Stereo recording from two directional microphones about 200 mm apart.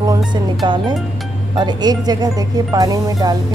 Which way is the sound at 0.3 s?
20° right (ahead or behind).